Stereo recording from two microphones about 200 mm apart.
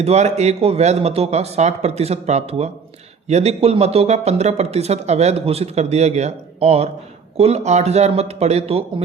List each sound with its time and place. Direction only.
0.0 s speech: 35° right (ahead or behind)